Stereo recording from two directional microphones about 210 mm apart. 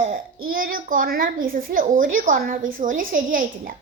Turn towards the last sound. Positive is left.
turn(degrees=-40)  # may be behind; listen again after turning